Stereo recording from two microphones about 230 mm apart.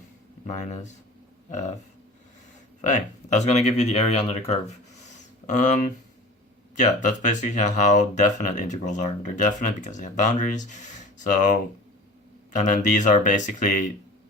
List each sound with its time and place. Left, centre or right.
0.4 s speech: left
2.9 s speech: left
12.5 s speech: left